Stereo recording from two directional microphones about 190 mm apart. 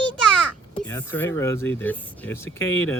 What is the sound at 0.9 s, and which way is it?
Speech, 10° left (ahead or behind).